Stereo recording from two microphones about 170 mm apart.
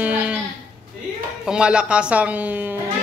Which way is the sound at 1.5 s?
5° right (ahead or behind).